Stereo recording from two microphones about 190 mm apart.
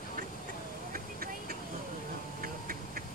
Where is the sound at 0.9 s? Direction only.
50° right (ahead or behind).